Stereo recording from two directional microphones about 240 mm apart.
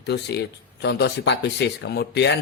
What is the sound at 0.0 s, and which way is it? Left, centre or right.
Speech, left.